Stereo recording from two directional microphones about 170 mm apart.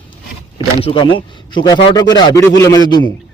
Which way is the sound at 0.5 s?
30° left (ahead or behind).